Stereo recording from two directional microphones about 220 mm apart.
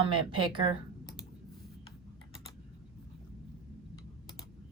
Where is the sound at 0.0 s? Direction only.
20° right (ahead or behind).